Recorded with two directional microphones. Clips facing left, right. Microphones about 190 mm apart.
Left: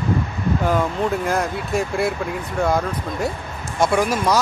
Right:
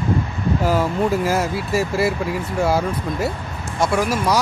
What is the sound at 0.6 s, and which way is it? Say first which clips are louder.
Speech: right 2 dB; 5° right (ahead or behind).